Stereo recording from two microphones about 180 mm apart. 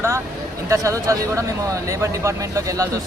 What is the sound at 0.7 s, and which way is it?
Speech, 15° right (ahead or behind).